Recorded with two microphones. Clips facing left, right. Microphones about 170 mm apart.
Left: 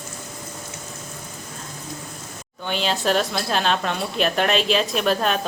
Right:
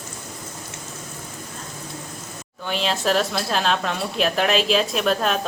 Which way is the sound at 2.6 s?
Centre (ahead or behind).